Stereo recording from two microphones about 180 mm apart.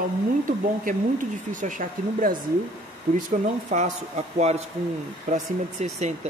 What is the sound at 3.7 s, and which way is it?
Speech, 40° right (ahead or behind).